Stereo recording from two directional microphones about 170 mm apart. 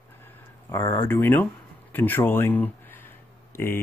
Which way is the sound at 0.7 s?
15° left (ahead or behind).